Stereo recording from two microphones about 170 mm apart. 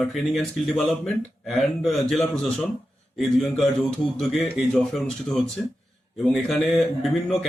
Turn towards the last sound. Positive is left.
turn(degrees=0)  # may be behind; listen again after turning